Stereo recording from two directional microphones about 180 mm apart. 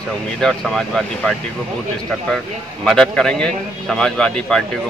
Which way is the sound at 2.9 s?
5° left (ahead or behind).